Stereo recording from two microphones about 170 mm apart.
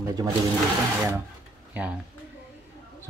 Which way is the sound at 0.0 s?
20° right (ahead or behind).